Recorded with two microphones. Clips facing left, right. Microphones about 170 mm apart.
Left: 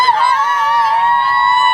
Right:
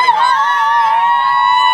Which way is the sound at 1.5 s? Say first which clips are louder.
Even; 15° right (ahead or behind).